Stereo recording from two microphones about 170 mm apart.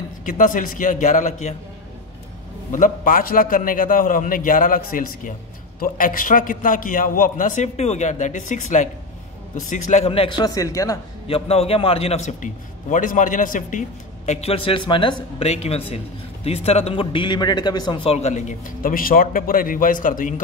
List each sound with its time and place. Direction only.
0.2 s a man's voice: 50° left (ahead or behind)
2.7 s a man's voice: 50° left (ahead or behind); by 11.0 s 20° left (ahead or behind)
11.2 s speech: 35° left (ahead or behind); by 20.3 s 50° left (ahead or behind)